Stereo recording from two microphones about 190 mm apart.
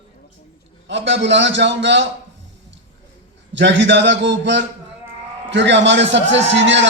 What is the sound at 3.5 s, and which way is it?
A man's voice, 70° right (ahead or behind).